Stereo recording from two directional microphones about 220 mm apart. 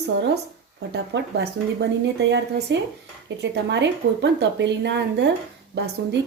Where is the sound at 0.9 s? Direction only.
50° right (ahead or behind).